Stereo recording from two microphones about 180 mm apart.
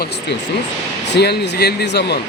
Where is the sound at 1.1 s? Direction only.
65° left (ahead or behind).